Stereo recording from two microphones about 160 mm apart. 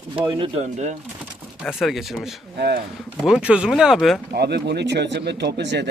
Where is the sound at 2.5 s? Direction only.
90° right.